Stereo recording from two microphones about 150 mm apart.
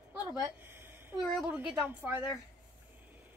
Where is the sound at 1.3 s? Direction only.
5° right (ahead or behind).